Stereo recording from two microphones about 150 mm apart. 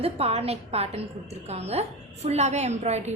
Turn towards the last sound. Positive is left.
turn(degrees=-45)  # may be behind; listen again after turning